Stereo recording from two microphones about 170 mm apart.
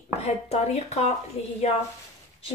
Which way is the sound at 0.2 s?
40° left (ahead or behind).